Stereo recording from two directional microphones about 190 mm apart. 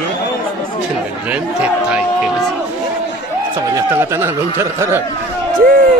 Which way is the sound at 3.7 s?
15° right (ahead or behind).